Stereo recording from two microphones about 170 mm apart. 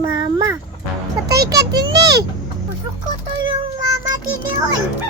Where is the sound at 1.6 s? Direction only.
75° right (ahead or behind).